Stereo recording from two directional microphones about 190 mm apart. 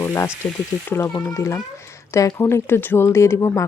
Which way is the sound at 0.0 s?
15° left (ahead or behind).